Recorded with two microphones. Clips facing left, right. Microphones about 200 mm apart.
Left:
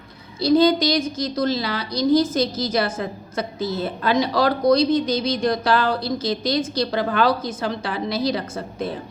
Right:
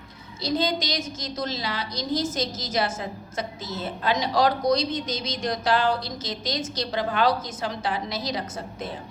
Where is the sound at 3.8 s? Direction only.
60° left (ahead or behind).